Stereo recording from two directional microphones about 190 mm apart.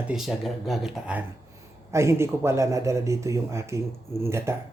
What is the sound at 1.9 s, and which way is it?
Speech, 15° right (ahead or behind).